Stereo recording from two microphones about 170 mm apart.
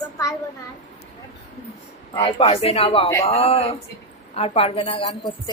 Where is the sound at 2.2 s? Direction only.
35° left (ahead or behind).